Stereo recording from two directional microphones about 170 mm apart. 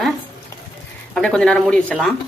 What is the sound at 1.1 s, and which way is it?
Speech, 5° left (ahead or behind).